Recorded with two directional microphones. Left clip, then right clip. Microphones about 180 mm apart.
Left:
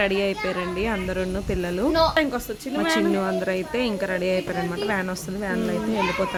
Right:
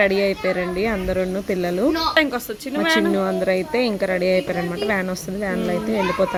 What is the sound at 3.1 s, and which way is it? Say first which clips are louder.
Speech: right 4 dB; 20° right (ahead or behind).